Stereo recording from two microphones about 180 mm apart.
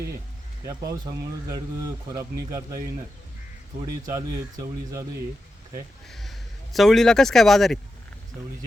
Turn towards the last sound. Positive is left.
turn(degrees=0)  # may be behind; listen again after turning